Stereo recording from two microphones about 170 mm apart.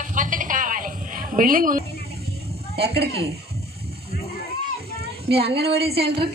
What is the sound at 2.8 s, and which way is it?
Speech, 75° right (ahead or behind).